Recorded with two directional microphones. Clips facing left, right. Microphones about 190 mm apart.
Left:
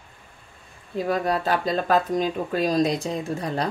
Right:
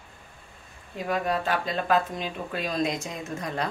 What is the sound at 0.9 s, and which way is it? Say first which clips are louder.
Speech: left 4 dB; 35° left (ahead or behind).